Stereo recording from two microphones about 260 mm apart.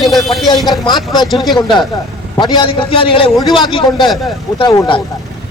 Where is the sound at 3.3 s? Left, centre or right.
Centre.